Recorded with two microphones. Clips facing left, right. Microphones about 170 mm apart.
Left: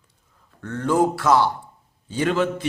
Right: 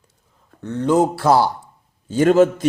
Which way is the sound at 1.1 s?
35° right (ahead or behind).